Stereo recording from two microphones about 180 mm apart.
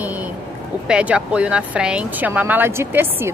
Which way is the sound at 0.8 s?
5° right (ahead or behind).